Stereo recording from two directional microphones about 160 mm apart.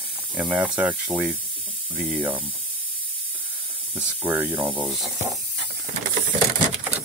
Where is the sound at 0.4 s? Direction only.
5° right (ahead or behind).